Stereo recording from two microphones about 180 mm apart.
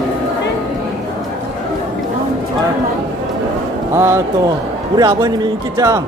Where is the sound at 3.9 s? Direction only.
15° right (ahead or behind).